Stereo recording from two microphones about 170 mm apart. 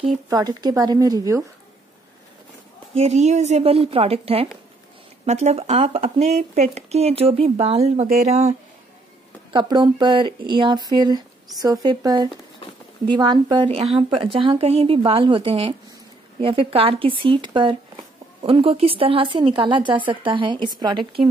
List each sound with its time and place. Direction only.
0.3 s speech: 25° right (ahead or behind)
2.9 s speech: 40° right (ahead or behind)
9.5 s speech: 30° right (ahead or behind)